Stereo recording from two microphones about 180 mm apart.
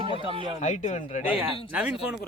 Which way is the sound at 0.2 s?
30° right (ahead or behind).